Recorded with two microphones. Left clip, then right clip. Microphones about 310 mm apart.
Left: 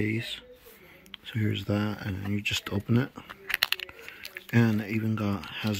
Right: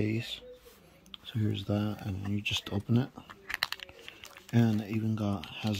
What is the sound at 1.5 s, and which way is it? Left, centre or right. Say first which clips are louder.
Speech: left 4 dB; centre.